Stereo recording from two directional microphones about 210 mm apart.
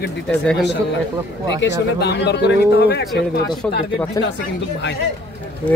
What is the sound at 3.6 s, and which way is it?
Speech, 5° left (ahead or behind).